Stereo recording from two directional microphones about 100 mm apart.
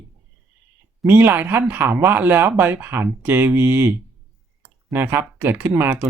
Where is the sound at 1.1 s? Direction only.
20° right (ahead or behind).